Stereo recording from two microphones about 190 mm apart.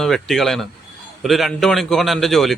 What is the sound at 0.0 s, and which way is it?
A man's voice, centre (ahead or behind).